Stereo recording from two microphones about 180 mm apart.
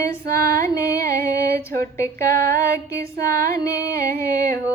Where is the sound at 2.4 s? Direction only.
55° right (ahead or behind).